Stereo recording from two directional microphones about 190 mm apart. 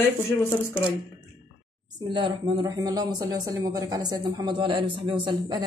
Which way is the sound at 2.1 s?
25° right (ahead or behind).